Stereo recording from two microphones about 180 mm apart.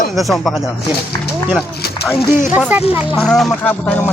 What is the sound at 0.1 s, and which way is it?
Speech, centre (ahead or behind).